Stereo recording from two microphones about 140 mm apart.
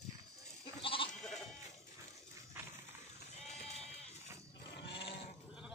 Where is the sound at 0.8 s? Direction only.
40° left (ahead or behind).